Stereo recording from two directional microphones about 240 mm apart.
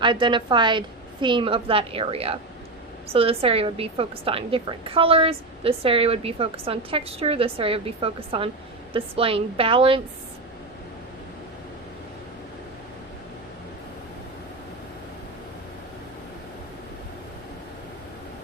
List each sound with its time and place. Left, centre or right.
0.0 s a woman's voice: centre